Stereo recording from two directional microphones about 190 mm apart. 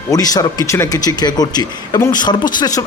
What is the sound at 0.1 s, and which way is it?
Speech, 20° left (ahead or behind).